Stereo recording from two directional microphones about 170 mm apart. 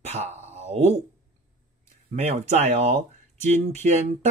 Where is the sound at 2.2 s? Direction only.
40° right (ahead or behind).